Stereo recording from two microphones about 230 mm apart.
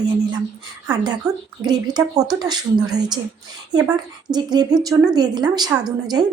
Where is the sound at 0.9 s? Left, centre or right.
Centre.